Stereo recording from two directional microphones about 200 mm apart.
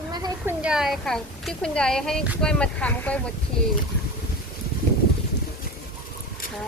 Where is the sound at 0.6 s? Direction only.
Centre (ahead or behind).